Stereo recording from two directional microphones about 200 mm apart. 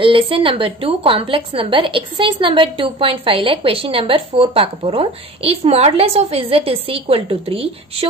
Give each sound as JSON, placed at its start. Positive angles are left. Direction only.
{"t": 0.0, "sound": "a woman's voice", "side_deg": -25}